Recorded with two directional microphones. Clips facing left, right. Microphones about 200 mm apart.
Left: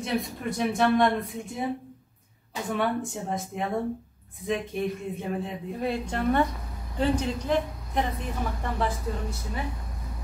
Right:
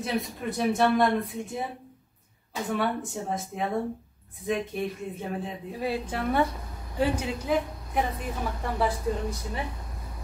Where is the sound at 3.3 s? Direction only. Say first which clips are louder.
Even; centre (ahead or behind).